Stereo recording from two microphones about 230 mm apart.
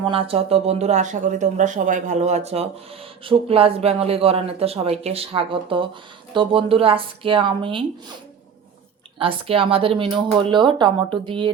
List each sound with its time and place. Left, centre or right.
0.1 s speech: right
9.1 s speech: right